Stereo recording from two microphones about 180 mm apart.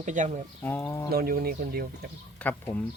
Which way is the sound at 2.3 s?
10° left (ahead or behind).